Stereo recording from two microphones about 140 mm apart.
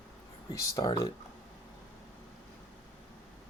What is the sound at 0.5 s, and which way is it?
Speech, 25° left (ahead or behind).